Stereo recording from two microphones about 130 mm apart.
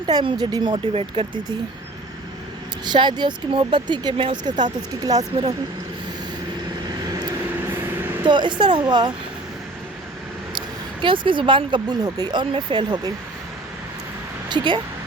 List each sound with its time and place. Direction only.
0.0 s speech: 35° right (ahead or behind)
0.9 s speech: 45° right (ahead or behind)
2.8 s speech: 35° right (ahead or behind)
8.2 s speech: 35° right (ahead or behind)
11.0 s speech: 40° right (ahead or behind)
14.5 s speech: 35° right (ahead or behind)